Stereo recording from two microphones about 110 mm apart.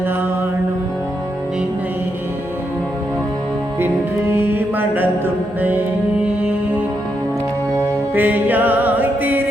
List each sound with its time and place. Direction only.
3.8 s music: 20° right (ahead or behind)
7.8 s music: 15° right (ahead or behind)